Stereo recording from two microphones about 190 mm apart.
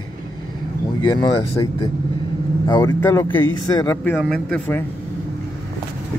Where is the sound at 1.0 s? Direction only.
20° left (ahead or behind).